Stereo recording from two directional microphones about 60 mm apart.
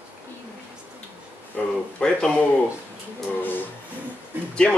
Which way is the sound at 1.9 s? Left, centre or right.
Centre.